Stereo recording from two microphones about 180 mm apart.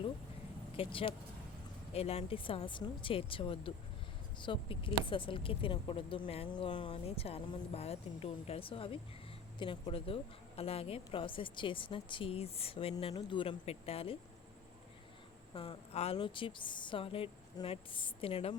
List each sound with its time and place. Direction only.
0.8 s a woman's voice: 30° left (ahead or behind)
15.5 s a woman's voice: 30° left (ahead or behind)